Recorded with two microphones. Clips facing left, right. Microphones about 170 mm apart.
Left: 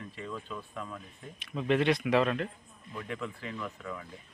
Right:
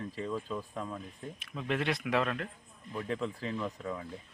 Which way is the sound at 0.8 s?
25° right (ahead or behind).